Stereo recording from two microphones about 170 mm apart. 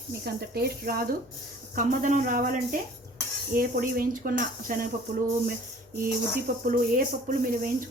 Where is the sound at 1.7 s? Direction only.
50° right (ahead or behind).